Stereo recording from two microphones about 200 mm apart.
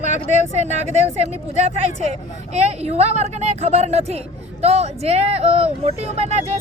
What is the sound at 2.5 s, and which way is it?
Speech, 30° right (ahead or behind).